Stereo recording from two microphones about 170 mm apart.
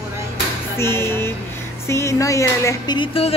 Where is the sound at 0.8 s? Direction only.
15° left (ahead or behind); by 3.3 s 30° left (ahead or behind).